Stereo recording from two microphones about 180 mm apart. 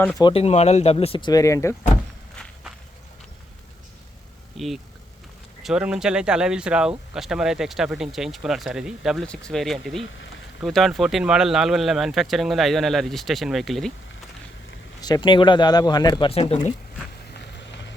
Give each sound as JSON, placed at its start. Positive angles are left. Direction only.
{"t": 0.2, "sound": "speech", "side_deg": 30}
{"t": 2.3, "sound": "walk", "side_deg": 5}
{"t": 4.5, "sound": "speech", "side_deg": 0}
{"t": 15.0, "sound": "speech", "side_deg": 25}
{"t": 17.3, "sound": "vehicle", "side_deg": 75}